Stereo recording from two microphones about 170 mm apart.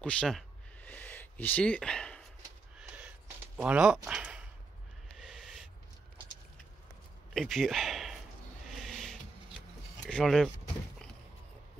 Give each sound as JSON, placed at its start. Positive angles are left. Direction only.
{"t": 0.0, "sound": "speech", "side_deg": 5}
{"t": 0.8, "sound": "a sound", "side_deg": 10}
{"t": 3.5, "sound": "speech", "side_deg": -5}
{"t": 5.1, "sound": "a sound", "side_deg": 0}
{"t": 7.3, "sound": "speech", "side_deg": 0}
{"t": 8.6, "sound": "owl", "side_deg": 0}
{"t": 10.0, "sound": "speech", "side_deg": 0}